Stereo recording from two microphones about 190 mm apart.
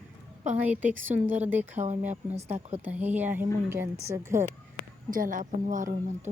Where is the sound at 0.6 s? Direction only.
10° right (ahead or behind).